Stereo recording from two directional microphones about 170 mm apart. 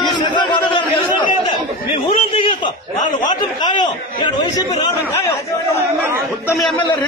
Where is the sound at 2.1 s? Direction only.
30° left (ahead or behind).